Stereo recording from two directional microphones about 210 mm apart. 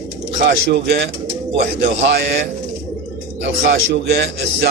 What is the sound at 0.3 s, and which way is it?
Speech, 55° right (ahead or behind).